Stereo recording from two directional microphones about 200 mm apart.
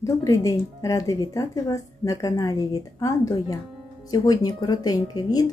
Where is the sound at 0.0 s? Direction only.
15° left (ahead or behind).